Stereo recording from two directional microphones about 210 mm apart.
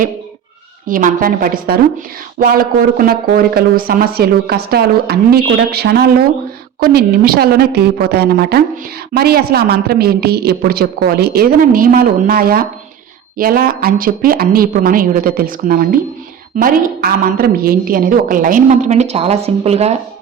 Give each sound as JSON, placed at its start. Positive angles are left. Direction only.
{"t": 0.9, "sound": "a woman's voice", "side_deg": -40}